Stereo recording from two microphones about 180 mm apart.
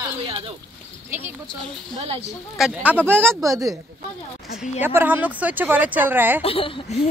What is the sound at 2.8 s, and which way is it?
Speech, 10° right (ahead or behind).